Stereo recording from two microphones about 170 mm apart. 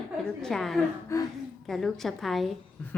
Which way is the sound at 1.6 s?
Centre (ahead or behind).